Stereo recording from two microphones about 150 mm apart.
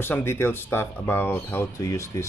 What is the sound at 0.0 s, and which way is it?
Speech, 15° left (ahead or behind).